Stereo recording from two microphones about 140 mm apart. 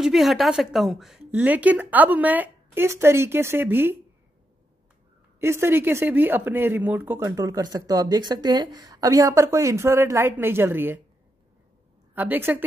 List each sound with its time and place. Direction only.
0.0 s a woman's voice: centre (ahead or behind)
5.4 s speech: 15° right (ahead or behind)
12.2 s a woman's voice: 15° right (ahead or behind)